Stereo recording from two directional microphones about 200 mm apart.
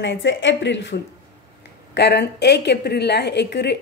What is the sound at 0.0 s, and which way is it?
A woman's voice, 65° left (ahead or behind).